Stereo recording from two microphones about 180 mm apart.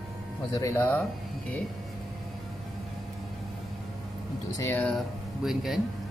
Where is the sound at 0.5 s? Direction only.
15° left (ahead or behind).